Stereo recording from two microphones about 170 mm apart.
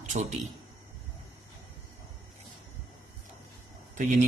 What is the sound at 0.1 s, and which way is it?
Speech, 50° right (ahead or behind).